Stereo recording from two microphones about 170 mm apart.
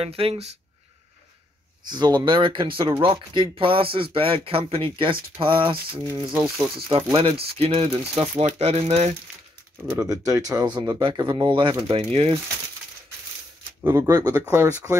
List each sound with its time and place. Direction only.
0.0 s speech: 35° right (ahead or behind)
1.9 s speech: 25° right (ahead or behind)
6.3 s speech: 5° right (ahead or behind)
7.2 s speech: 35° right (ahead or behind)
9.8 s speech: 20° right (ahead or behind); by 12.4 s 35° right (ahead or behind)
13.8 s speech: 15° right (ahead or behind)